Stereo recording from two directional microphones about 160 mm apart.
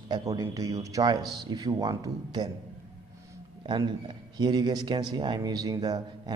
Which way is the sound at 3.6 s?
30° right (ahead or behind).